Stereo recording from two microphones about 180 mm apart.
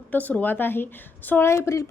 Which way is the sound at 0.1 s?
10° left (ahead or behind).